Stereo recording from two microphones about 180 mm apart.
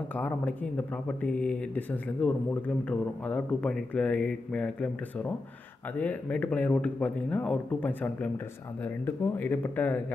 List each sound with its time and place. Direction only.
0.1 s speech: 10° left (ahead or behind)